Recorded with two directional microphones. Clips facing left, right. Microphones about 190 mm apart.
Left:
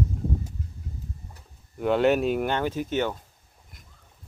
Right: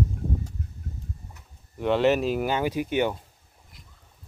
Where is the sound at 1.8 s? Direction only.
Centre (ahead or behind).